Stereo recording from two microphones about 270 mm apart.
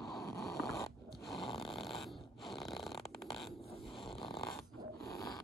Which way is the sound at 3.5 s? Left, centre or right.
Left.